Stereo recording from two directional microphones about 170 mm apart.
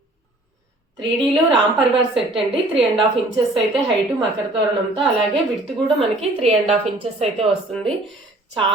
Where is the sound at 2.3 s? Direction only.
30° right (ahead or behind).